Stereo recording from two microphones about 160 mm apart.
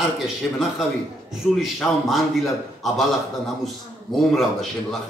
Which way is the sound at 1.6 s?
Centre (ahead or behind).